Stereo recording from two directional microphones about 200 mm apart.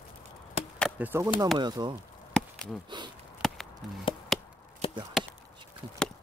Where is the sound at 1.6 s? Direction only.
20° right (ahead or behind).